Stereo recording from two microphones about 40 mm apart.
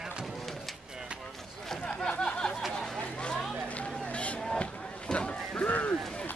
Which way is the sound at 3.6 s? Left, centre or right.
Left.